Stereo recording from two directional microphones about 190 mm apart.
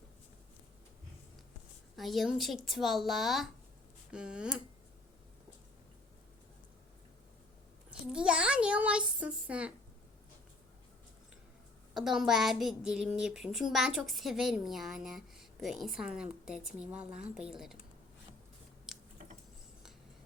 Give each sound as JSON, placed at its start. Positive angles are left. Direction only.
{"t": 2.0, "sound": "a child's voice", "side_deg": 0}
{"t": 7.9, "sound": "a child's voice", "side_deg": -5}
{"t": 11.9, "sound": "a child's voice", "side_deg": 0}
{"t": 18.9, "sound": "a sound", "side_deg": 0}